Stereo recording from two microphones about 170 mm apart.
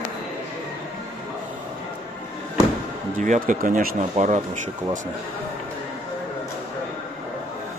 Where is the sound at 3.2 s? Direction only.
50° right (ahead or behind).